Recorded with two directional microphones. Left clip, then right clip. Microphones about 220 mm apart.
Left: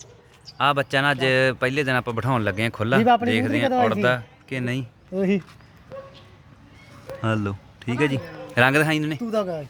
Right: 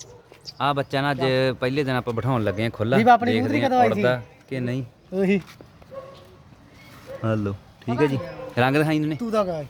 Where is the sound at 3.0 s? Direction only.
30° left (ahead or behind).